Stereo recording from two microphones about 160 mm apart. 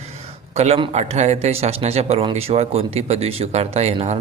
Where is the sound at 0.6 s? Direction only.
40° right (ahead or behind).